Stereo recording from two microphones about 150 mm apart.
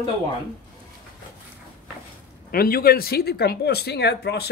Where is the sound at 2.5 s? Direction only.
80° left.